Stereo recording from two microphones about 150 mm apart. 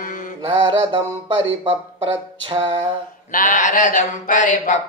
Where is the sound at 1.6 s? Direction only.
35° right (ahead or behind).